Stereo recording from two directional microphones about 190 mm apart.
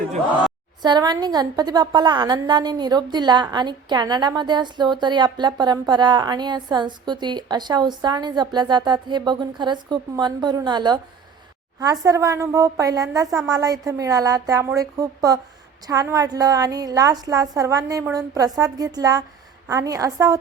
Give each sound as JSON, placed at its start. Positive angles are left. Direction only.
{"t": 0.8, "sound": "a woman's voice", "side_deg": -20}